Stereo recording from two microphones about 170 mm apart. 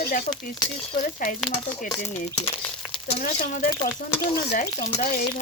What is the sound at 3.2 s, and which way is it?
Speech, 50° left (ahead or behind).